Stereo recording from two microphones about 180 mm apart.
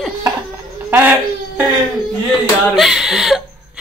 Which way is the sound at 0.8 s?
15° right (ahead or behind).